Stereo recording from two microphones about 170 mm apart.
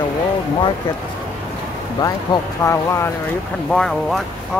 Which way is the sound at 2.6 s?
15° left (ahead or behind).